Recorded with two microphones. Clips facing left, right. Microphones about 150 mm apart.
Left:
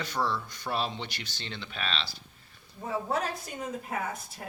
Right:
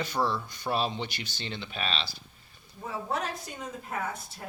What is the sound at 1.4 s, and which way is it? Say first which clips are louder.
Speech: right 2 dB; 15° right (ahead or behind).